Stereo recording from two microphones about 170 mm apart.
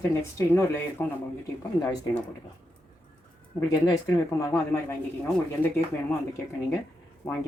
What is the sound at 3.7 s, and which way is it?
Speech, 20° left (ahead or behind).